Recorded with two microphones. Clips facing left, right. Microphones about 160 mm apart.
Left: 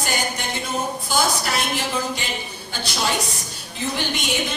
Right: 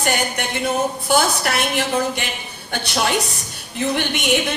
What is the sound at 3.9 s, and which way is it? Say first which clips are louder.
Speech: right 4 dB; 60° right (ahead or behind).